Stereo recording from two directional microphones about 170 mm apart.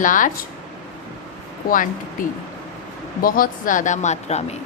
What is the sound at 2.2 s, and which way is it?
A woman's voice, 55° left (ahead or behind).